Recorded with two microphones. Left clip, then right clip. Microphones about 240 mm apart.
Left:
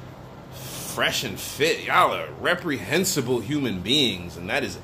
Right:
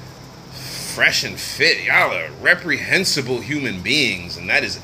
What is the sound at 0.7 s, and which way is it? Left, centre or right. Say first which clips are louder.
A man's voice: right 8 dB; centre.